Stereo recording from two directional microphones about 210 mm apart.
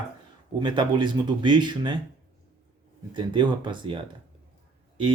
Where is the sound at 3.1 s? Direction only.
20° right (ahead or behind).